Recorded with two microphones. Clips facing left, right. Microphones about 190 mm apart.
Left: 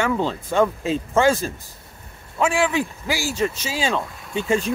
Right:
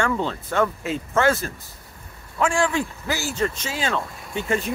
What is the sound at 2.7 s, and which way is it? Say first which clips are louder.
Speech: left 2 dB; 15° left (ahead or behind).